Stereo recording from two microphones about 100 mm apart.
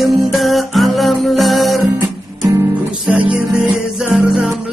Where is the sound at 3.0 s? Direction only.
5° right (ahead or behind).